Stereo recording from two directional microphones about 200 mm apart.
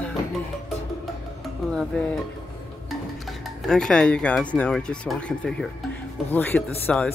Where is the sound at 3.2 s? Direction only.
Centre (ahead or behind).